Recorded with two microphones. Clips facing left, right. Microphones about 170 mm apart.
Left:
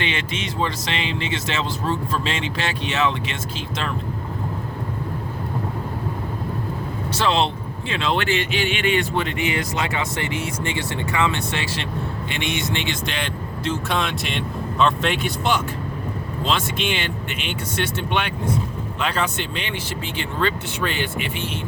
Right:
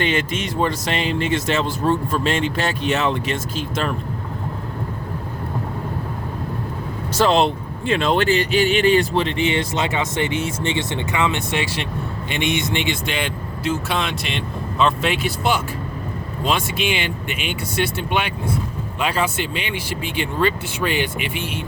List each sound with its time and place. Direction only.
0.0 s speech: 45° right (ahead or behind)
7.1 s speech: 45° right (ahead or behind); by 21.6 s 15° right (ahead or behind)